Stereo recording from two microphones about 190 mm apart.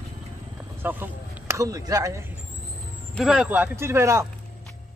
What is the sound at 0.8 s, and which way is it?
Speech, 10° right (ahead or behind).